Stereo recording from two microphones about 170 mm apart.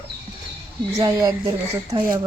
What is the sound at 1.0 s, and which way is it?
Speech, 20° right (ahead or behind).